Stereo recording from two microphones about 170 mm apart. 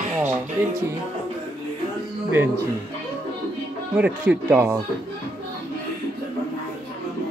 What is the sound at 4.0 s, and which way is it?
Speech, 10° right (ahead or behind).